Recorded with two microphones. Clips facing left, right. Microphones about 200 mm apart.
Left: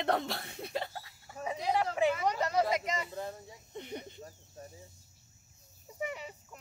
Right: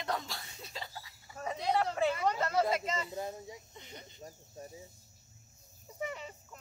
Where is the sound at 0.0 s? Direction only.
60° left (ahead or behind).